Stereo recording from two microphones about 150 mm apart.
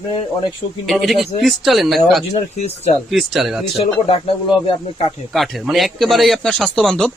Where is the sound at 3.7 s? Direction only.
40° left (ahead or behind).